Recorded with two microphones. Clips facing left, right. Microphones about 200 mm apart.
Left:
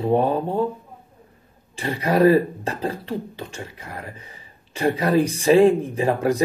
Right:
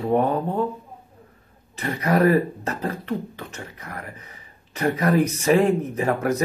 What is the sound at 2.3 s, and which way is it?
Speech, 30° left (ahead or behind).